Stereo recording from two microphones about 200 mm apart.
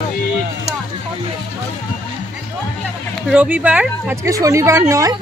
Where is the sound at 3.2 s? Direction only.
5° right (ahead or behind).